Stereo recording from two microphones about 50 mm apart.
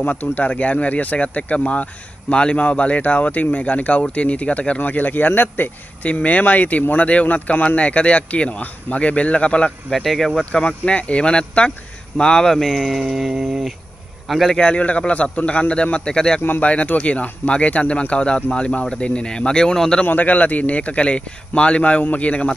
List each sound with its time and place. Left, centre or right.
0.0 s speech: left
6.0 s speech: left
9.8 s speech: centre
10.5 s a man's voice: centre
14.5 s speech: left
20.1 s speech: left